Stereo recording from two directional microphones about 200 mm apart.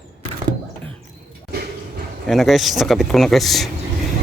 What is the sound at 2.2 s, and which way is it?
Speech, centre (ahead or behind).